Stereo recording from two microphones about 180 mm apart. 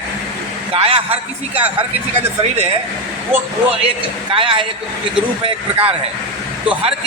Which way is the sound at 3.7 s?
30° right (ahead or behind).